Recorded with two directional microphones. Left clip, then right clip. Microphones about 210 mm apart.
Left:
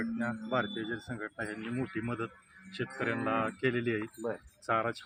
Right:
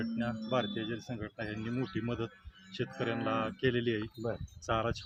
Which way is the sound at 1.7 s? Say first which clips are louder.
Left 1 dB; 5° right (ahead or behind).